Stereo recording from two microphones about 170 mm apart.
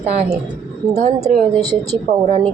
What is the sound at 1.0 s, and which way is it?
Speech, 40° right (ahead or behind).